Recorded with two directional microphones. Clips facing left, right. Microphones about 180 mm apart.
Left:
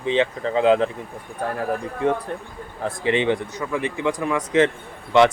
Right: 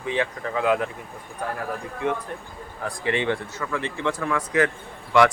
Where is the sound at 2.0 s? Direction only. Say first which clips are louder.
Left 4 dB; 30° left (ahead or behind).